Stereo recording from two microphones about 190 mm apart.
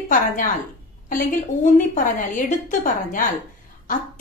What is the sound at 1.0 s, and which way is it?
A woman's voice, 45° left (ahead or behind).